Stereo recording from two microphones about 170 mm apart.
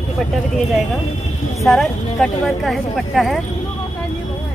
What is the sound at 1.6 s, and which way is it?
Speech, centre (ahead or behind).